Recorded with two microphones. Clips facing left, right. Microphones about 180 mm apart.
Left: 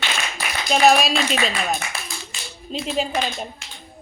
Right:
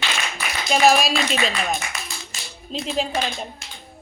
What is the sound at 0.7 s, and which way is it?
Speech, centre (ahead or behind).